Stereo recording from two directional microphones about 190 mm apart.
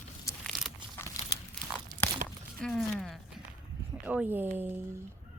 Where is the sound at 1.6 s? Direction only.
Centre (ahead or behind).